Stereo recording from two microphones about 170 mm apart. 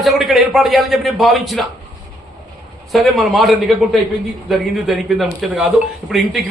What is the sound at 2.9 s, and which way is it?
A man's voice, centre (ahead or behind).